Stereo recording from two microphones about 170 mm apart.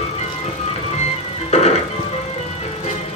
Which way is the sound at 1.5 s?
40° left (ahead or behind).